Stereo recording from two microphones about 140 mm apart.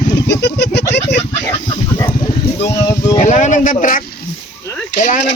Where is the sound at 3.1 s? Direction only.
60° left (ahead or behind).